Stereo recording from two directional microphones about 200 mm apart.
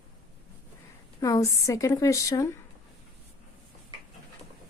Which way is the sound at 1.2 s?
15° left (ahead or behind).